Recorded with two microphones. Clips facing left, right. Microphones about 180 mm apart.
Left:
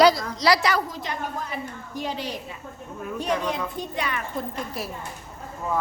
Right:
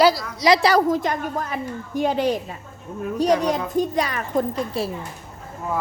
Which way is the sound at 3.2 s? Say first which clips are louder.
Right 7 dB; 40° right (ahead or behind).